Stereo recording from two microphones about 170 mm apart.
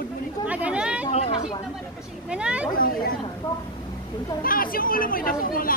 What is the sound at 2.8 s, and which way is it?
Speech, 60° left (ahead or behind).